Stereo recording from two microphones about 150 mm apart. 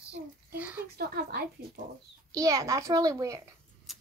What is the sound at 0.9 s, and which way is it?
Speech, 90° right.